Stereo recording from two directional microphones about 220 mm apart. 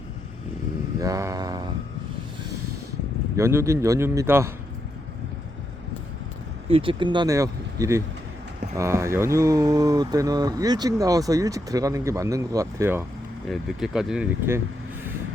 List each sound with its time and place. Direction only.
0.9 s vehicle: 15° right (ahead or behind)
3.3 s speech: 15° right (ahead or behind)
6.7 s speech: 25° right (ahead or behind); by 14.6 s 10° right (ahead or behind)